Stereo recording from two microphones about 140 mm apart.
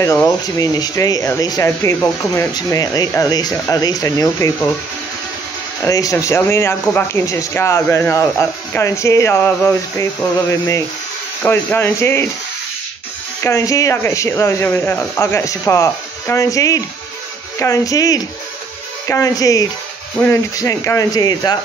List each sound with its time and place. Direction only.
0.6 s speech: 25° left (ahead or behind)
5.9 s speech: 25° left (ahead or behind)
11.4 s speech: 15° left (ahead or behind)
13.4 s speech: 20° left (ahead or behind)